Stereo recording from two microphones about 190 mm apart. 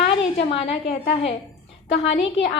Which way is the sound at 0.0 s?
30° left (ahead or behind).